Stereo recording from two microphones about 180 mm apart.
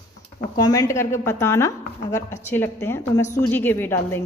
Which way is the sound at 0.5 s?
20° left (ahead or behind).